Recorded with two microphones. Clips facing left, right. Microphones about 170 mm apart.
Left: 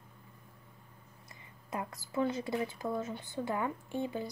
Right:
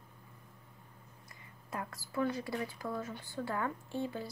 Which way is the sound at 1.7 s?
20° left (ahead or behind).